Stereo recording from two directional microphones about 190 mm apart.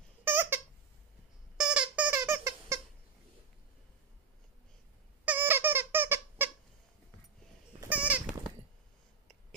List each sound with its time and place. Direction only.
0.2 s a sound: 10° right (ahead or behind)
1.6 s squeak: 5° right (ahead or behind)
5.2 s squeak: 10° right (ahead or behind)
7.8 s goat: 5° right (ahead or behind)